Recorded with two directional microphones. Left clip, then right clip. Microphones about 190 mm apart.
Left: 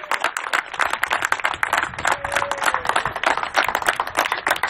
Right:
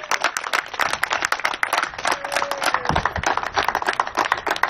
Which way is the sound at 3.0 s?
Centre (ahead or behind).